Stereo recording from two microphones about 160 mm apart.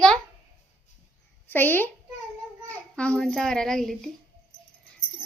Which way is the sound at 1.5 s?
10° left (ahead or behind).